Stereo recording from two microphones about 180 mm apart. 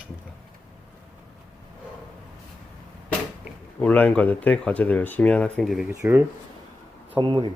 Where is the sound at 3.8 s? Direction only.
10° left (ahead or behind).